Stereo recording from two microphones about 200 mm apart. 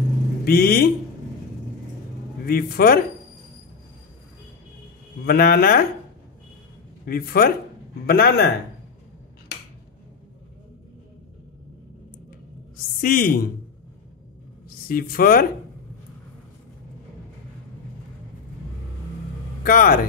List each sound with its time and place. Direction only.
0.5 s speech: 50° left (ahead or behind)
2.4 s speech: 50° left (ahead or behind)
5.2 s speech: 50° left (ahead or behind)
7.1 s speech: 50° left (ahead or behind)
13.0 s speech: 45° left (ahead or behind)
14.9 s speech: 45° left (ahead or behind)
19.6 s speech: 45° left (ahead or behind)